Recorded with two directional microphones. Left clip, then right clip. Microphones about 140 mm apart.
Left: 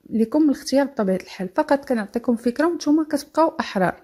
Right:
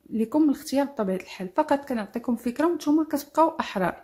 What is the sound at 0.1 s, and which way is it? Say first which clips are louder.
A woman's voice: left 4 dB; 30° left (ahead or behind).